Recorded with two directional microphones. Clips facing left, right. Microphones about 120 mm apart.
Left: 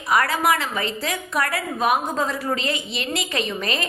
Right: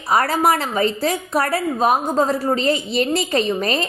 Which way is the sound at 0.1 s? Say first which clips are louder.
Right 3 dB; 35° right (ahead or behind).